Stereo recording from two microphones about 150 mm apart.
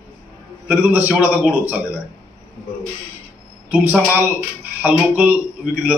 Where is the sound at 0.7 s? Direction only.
10° right (ahead or behind).